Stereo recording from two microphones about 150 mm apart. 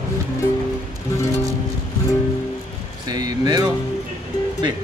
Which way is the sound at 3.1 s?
25° right (ahead or behind).